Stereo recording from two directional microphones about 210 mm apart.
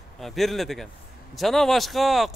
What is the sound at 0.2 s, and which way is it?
A man's voice, centre (ahead or behind).